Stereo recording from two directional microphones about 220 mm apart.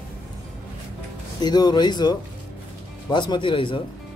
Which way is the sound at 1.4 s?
20° left (ahead or behind).